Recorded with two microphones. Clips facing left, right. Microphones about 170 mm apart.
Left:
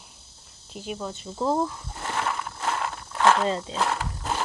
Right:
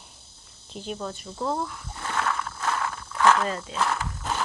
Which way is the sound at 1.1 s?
25° left (ahead or behind).